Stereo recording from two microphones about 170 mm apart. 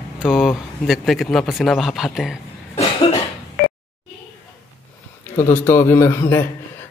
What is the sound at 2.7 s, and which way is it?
Cough, 40° left (ahead or behind).